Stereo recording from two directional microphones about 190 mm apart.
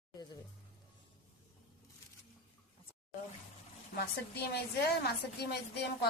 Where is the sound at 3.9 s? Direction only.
55° left (ahead or behind).